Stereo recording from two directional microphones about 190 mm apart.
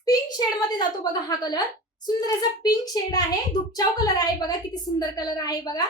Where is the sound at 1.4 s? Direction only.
20° left (ahead or behind).